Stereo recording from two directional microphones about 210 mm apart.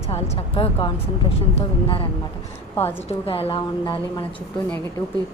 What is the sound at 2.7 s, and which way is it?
Speech, 10° left (ahead or behind).